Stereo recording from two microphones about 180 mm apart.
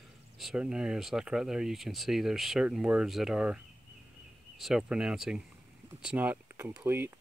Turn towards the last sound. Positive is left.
turn(degrees=-10)  # may be behind; listen again after turning